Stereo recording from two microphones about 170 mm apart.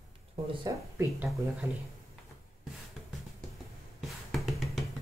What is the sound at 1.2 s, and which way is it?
Speech, 10° right (ahead or behind).